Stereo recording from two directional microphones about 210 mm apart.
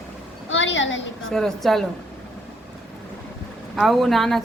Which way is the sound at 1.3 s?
Centre (ahead or behind).